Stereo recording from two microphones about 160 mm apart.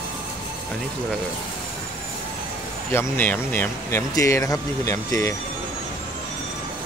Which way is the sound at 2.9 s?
15° left (ahead or behind).